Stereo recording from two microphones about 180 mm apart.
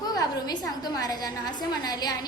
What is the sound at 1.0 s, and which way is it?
A woman's voice, 20° left (ahead or behind).